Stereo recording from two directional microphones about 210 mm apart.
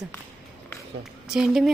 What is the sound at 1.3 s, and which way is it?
Speech, centre (ahead or behind).